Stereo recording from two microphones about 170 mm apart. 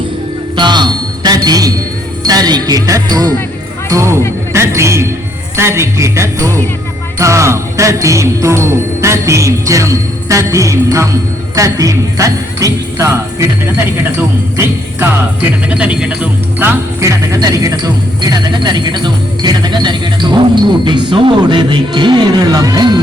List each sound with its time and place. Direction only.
0.5 s music: 25° right (ahead or behind)
2.2 s speech: 20° right (ahead or behind)
3.8 s jingle bell: 15° right (ahead or behind)
11.5 s speech: 20° right (ahead or behind)
14.5 s music: 15° right (ahead or behind)
15.7 s speech: 5° right (ahead or behind); by 23.0 s 25° right (ahead or behind)